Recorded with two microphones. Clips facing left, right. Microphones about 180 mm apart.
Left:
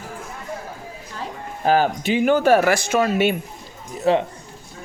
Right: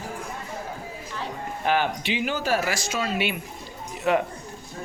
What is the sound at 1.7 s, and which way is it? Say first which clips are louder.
Speech: left 6 dB; 40° left (ahead or behind).